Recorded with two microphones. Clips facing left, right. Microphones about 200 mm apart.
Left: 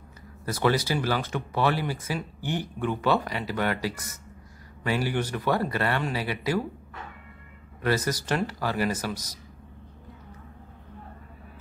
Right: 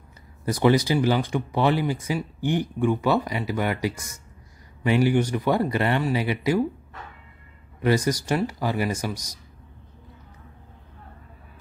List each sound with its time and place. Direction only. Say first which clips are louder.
0.5 s speech: right 5 dB; 15° right (ahead or behind)
7.8 s speech: right 4 dB; 15° right (ahead or behind)